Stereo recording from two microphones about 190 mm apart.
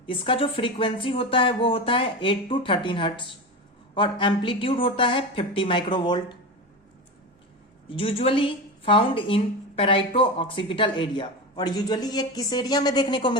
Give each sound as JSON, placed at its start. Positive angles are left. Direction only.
{"t": 0.1, "sound": "speech", "side_deg": 30}
{"t": 7.9, "sound": "a woman's voice", "side_deg": 30}